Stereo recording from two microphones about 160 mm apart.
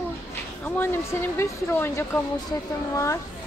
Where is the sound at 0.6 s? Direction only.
15° left (ahead or behind).